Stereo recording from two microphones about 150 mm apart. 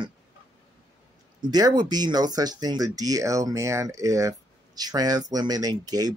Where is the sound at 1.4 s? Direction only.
30° right (ahead or behind).